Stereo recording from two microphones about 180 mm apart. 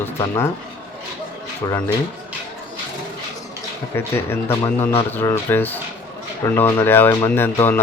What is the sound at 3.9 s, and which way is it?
Speech, 15° left (ahead or behind).